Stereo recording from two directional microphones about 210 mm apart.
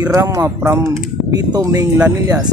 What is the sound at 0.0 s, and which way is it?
Speech, 15° right (ahead or behind).